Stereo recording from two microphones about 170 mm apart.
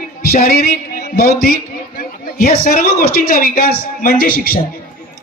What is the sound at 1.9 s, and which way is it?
A woman's voice, 60° left (ahead or behind).